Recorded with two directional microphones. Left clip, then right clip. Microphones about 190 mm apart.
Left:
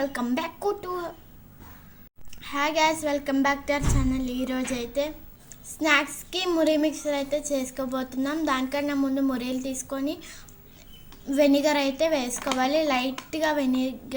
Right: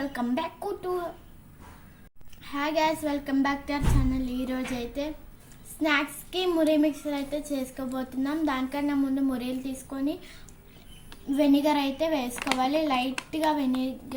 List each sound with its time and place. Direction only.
0.0 s speech: 30° left (ahead or behind)
2.4 s a child's voice: 35° left (ahead or behind)